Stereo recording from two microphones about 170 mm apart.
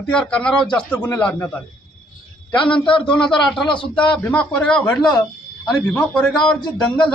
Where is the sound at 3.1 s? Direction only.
5° left (ahead or behind).